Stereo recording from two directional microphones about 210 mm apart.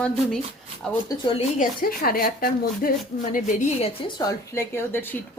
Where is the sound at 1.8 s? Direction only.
45° left (ahead or behind).